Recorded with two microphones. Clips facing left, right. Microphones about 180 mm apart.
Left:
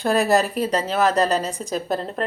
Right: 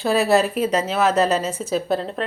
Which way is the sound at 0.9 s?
5° right (ahead or behind).